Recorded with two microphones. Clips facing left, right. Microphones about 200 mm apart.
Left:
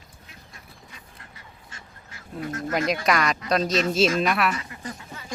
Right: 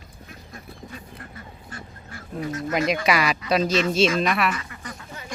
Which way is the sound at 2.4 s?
50° left (ahead or behind).